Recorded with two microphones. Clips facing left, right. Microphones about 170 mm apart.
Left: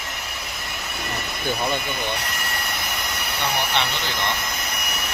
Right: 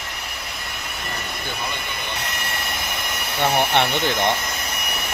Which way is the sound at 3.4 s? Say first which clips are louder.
Right 6 dB; 50° right (ahead or behind).